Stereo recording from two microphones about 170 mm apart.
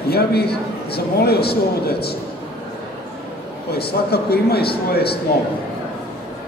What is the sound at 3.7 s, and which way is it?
A man's voice, 70° left (ahead or behind).